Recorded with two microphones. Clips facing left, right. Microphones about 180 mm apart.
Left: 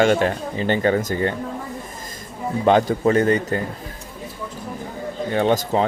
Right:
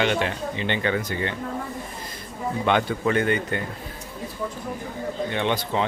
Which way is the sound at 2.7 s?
35° left (ahead or behind).